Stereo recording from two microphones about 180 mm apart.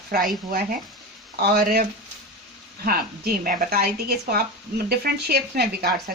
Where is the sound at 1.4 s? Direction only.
55° right (ahead or behind).